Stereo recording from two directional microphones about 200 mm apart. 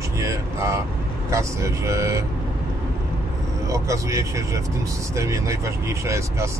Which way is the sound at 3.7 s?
15° right (ahead or behind).